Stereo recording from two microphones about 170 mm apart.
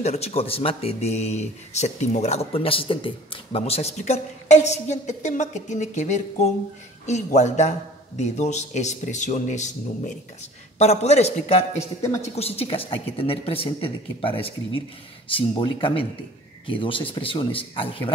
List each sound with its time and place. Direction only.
0.0 s a woman's voice: 40° left (ahead or behind)